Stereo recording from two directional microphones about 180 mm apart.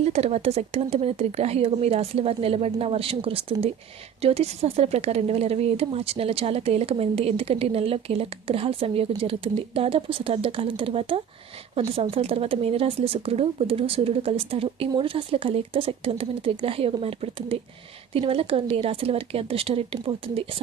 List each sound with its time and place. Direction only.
0.0 s speech: 35° right (ahead or behind)